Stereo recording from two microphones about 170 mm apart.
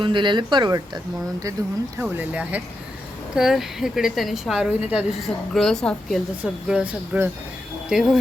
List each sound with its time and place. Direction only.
0.0 s speech: 30° right (ahead or behind)
2.0 s a woman's voice: 10° right (ahead or behind)